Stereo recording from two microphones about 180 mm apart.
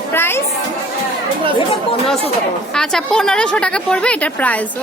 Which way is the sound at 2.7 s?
5° left (ahead or behind).